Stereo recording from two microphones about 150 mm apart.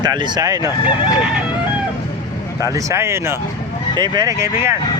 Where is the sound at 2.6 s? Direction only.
20° right (ahead or behind).